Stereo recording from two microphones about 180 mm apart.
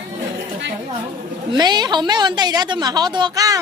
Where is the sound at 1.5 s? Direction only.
25° right (ahead or behind).